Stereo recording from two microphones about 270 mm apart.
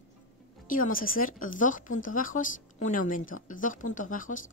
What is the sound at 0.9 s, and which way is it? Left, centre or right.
A woman's voice, left.